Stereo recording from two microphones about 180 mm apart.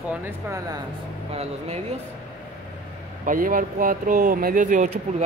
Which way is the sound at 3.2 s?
50° right (ahead or behind).